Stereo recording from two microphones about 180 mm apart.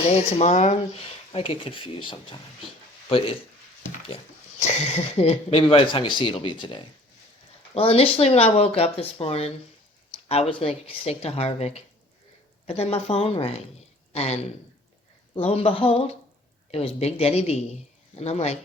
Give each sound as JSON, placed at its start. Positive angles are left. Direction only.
{"t": 0.1, "sound": "speech", "side_deg": 40}
{"t": 4.6, "sound": "speech", "side_deg": 35}